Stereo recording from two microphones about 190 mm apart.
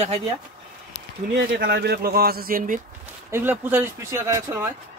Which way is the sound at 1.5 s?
55° right (ahead or behind).